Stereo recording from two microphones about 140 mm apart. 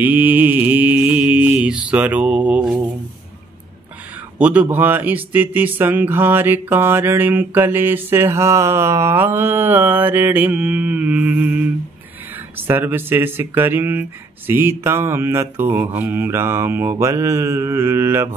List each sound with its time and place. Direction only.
0.0 s speech: 10° right (ahead or behind)
4.4 s speech: 10° right (ahead or behind)